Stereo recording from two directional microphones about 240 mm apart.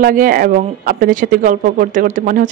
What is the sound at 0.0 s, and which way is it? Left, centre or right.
Speech, right.